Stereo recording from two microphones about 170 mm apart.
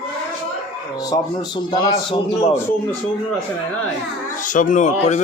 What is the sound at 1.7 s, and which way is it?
Speech, 25° left (ahead or behind).